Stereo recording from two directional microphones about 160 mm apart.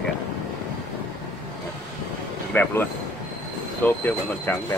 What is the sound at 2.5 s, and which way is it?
Speech, 10° left (ahead or behind).